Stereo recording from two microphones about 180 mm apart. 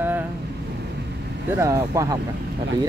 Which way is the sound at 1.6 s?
15° right (ahead or behind).